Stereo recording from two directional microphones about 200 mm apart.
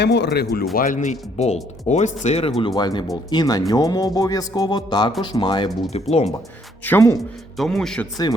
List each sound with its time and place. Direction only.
0.0 s speech: 55° left (ahead or behind); by 2.5 s 30° left (ahead or behind)
2.6 s speech: 20° left (ahead or behind)
6.8 s speech: 15° left (ahead or behind)
7.5 s a man's voice: centre (ahead or behind)